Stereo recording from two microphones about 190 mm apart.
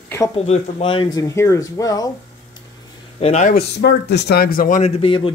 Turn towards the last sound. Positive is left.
turn(degrees=25)  # may be behind; listen again after turning